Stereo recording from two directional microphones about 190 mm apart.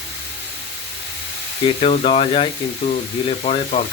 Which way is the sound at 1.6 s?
35° left (ahead or behind).